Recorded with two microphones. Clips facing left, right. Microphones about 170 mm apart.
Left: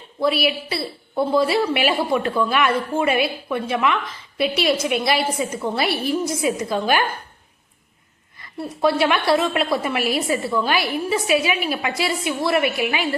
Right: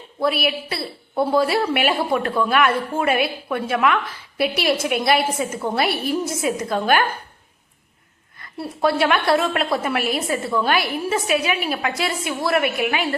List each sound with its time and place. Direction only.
0.2 s a woman's voice: centre (ahead or behind)
8.8 s a woman's voice: centre (ahead or behind)